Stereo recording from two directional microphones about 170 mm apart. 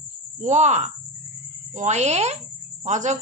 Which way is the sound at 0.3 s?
45° right (ahead or behind).